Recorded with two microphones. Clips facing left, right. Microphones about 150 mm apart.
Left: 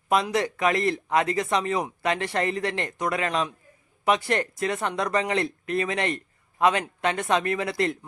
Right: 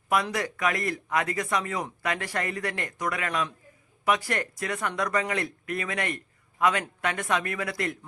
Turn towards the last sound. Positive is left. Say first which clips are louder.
# left 5 dB
turn(degrees=25)  # may be behind; listen again after turning